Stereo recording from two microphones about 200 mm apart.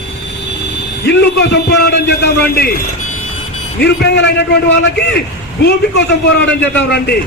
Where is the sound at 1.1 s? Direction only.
55° left (ahead or behind).